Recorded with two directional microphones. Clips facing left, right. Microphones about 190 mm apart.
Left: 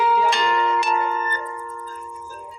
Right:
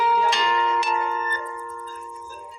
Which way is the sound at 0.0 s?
55° left (ahead or behind).